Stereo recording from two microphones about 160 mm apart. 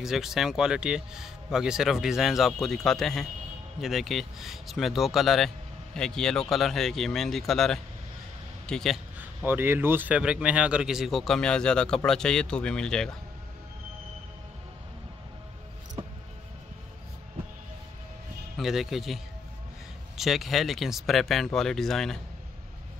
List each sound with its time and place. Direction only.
0.0 s a man's voice: centre (ahead or behind)
9.2 s a man's voice: 10° right (ahead or behind); by 13.1 s 5° left (ahead or behind)
18.6 s a man's voice: centre (ahead or behind)